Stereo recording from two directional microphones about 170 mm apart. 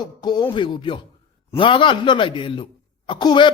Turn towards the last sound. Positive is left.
turn(degrees=25)  # may be behind; listen again after turning